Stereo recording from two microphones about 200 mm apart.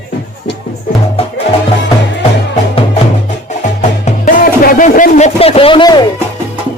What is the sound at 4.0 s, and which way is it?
Music, 40° left (ahead or behind).